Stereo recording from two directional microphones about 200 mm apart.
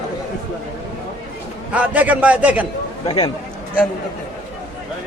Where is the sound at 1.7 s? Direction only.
5° right (ahead or behind).